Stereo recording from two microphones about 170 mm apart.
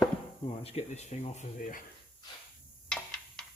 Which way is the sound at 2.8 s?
5° left (ahead or behind).